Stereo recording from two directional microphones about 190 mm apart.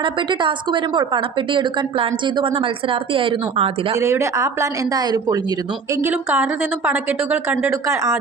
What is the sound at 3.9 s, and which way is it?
Speech, 15° right (ahead or behind).